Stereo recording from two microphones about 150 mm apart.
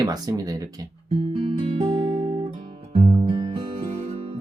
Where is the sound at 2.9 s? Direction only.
40° right (ahead or behind).